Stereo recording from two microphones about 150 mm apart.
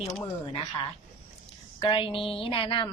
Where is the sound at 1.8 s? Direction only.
35° left (ahead or behind).